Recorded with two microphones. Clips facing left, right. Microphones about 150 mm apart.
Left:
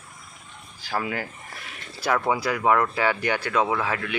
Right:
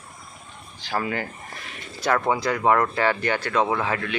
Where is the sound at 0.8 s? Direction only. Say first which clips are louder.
Right 2 dB; 5° left (ahead or behind).